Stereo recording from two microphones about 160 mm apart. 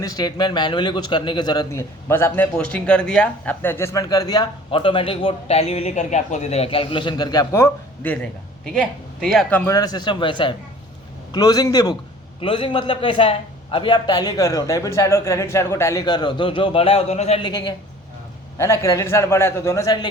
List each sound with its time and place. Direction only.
0.0 s speech: 25° left (ahead or behind)
8.1 s a man's voice: 5° left (ahead or behind)
9.6 s speech: 20° left (ahead or behind); by 17.4 s 40° left (ahead or behind)
17.4 s speech: 25° left (ahead or behind)